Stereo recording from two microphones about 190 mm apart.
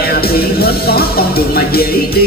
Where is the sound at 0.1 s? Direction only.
55° left (ahead or behind).